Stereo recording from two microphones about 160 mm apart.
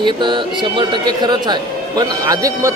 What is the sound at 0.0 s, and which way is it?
A man's voice, 30° right (ahead or behind).